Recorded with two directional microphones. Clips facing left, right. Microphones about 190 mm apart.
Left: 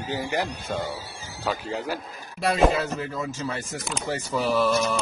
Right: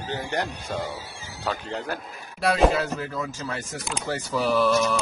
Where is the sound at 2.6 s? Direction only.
5° right (ahead or behind).